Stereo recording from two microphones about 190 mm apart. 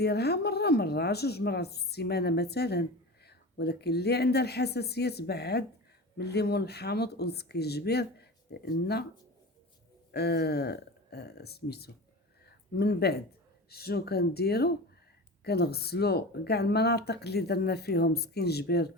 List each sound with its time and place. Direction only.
0.0 s speech: 60° left (ahead or behind)
10.1 s speech: 60° left (ahead or behind)
12.5 s a sound: 55° left (ahead or behind)
13.7 s speech: 55° left (ahead or behind)